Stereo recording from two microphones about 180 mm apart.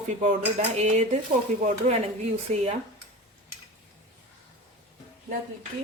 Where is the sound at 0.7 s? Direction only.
40° right (ahead or behind).